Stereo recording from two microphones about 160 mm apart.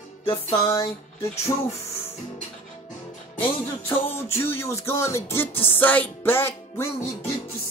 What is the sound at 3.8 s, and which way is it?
Music, 15° left (ahead or behind).